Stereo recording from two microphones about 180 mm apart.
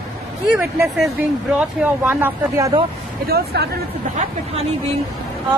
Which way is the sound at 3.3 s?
60° right (ahead or behind).